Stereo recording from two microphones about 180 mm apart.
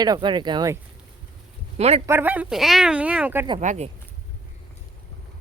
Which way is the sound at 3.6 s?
45° right (ahead or behind).